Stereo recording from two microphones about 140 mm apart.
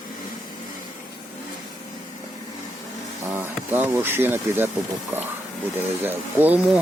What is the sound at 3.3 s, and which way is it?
Bee, 15° right (ahead or behind).